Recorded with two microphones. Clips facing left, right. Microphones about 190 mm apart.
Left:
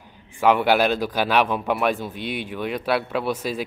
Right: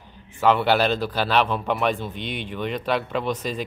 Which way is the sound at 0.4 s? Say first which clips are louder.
Left 1 dB; 10° left (ahead or behind).